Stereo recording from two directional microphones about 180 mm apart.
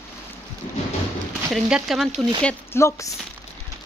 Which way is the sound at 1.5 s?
Centre (ahead or behind).